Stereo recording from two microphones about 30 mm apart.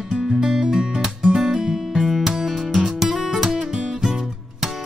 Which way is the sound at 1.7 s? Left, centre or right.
Centre.